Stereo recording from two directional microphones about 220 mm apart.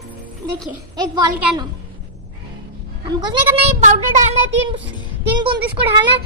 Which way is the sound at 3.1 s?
20° right (ahead or behind).